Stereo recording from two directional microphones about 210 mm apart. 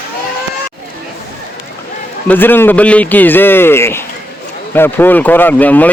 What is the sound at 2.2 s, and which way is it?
A man's voice, 10° left (ahead or behind).